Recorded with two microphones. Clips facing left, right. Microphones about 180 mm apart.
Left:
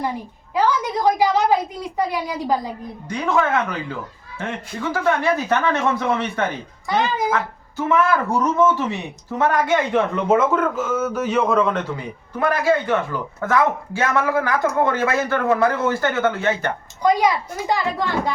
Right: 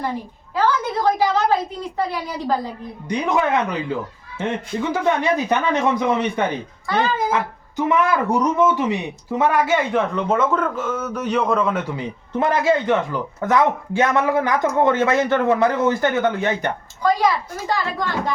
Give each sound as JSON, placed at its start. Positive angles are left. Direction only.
{"t": 0.5, "sound": "a woman's voice", "side_deg": 15}
{"t": 3.1, "sound": "speech", "side_deg": -15}
{"t": 6.8, "sound": "speech", "side_deg": 15}
{"t": 7.3, "sound": "speech", "side_deg": -15}
{"t": 12.3, "sound": "speech", "side_deg": -20}
{"t": 17.0, "sound": "a woman's voice", "side_deg": 20}